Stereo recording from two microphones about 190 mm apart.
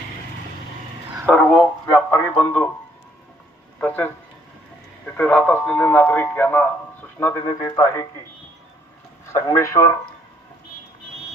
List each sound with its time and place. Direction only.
1.3 s speech: 5° left (ahead or behind)
3.8 s speech: 10° left (ahead or behind)
9.3 s speech: 15° left (ahead or behind)